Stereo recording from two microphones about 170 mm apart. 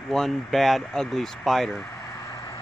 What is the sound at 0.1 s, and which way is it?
Speech, centre (ahead or behind).